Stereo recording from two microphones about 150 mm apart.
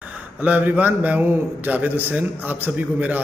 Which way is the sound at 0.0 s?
10° right (ahead or behind).